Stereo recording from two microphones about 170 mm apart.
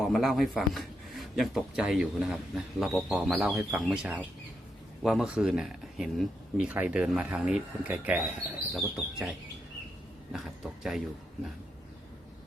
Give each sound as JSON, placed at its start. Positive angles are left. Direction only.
{"t": 0.0, "sound": "a man's voice", "side_deg": 0}
{"t": 10.3, "sound": "a man's voice", "side_deg": -5}